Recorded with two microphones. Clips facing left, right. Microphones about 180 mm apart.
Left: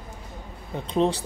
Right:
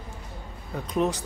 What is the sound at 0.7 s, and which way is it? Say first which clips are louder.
Speech: left 3 dB; 30° left (ahead or behind).